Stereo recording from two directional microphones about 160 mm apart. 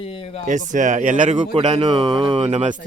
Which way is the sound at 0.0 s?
35° left (ahead or behind).